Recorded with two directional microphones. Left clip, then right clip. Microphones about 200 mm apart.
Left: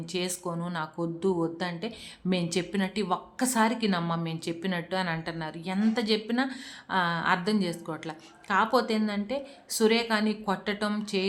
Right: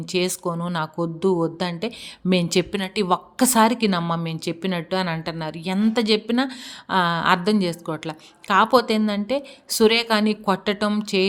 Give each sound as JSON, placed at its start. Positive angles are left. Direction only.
{"t": 0.1, "sound": "a woman's voice", "side_deg": -35}